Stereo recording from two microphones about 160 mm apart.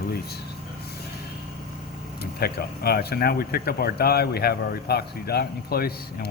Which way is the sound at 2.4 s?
75° left (ahead or behind).